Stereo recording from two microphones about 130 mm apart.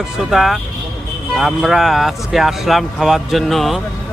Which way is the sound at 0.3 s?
Centre (ahead or behind).